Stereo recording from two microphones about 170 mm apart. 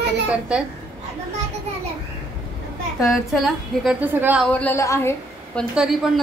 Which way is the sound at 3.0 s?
Centre (ahead or behind).